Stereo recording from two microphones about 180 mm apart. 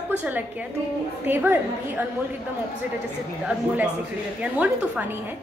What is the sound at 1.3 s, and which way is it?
Speech, 10° right (ahead or behind).